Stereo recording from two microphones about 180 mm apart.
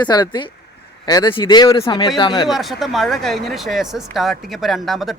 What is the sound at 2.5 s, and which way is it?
Speech, centre (ahead or behind).